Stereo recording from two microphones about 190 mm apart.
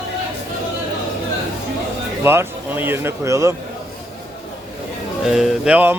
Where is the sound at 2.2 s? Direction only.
10° right (ahead or behind).